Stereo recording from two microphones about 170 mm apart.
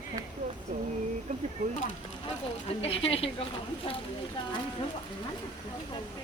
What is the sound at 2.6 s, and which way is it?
Speech, 35° left (ahead or behind).